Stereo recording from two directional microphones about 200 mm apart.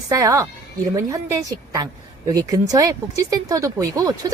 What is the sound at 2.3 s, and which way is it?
A woman's voice, 20° right (ahead or behind).